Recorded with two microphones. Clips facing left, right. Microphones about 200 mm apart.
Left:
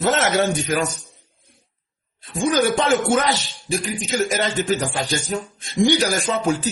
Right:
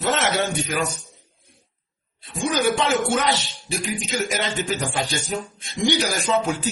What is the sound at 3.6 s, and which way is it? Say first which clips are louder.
Speech: left 4 dB; 45° left (ahead or behind).